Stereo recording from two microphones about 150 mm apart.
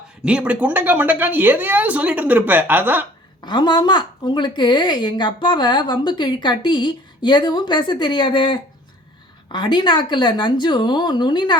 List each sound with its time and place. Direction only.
0.2 s a woman's voice: 5° right (ahead or behind)
3.4 s a woman's voice: 30° left (ahead or behind)